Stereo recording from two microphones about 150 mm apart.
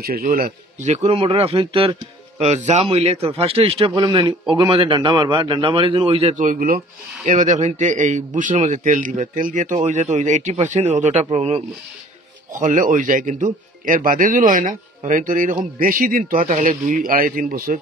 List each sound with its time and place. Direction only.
0.2 s a man's voice: 60° right (ahead or behind); by 1.9 s 35° right (ahead or behind)
2.3 s a man's voice: 45° right (ahead or behind)
6.3 s speech: 60° right (ahead or behind)
7.2 s speech: 55° right (ahead or behind)
12.5 s speech: 60° right (ahead or behind); by 17.7 s 75° right (ahead or behind)